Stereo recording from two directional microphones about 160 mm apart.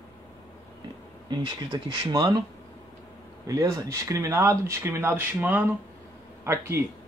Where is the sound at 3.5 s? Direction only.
20° right (ahead or behind).